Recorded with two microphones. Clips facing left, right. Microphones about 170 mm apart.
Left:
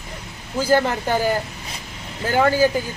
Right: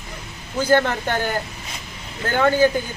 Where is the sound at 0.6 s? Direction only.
10° left (ahead or behind).